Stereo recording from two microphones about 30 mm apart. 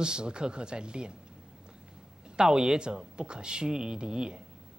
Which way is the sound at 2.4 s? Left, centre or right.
Right.